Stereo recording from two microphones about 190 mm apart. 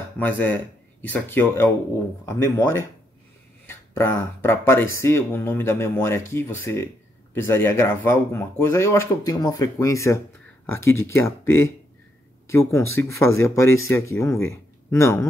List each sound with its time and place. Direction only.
0.2 s speech: 10° left (ahead or behind)